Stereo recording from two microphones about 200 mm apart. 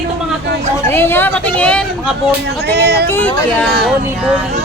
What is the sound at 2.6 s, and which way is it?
Speech, 55° right (ahead or behind).